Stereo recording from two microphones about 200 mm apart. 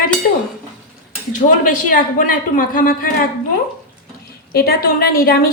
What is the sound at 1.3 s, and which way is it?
A woman's voice, 40° left (ahead or behind).